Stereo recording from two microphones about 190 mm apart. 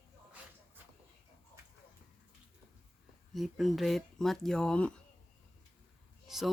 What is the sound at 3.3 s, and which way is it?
Speech, centre (ahead or behind).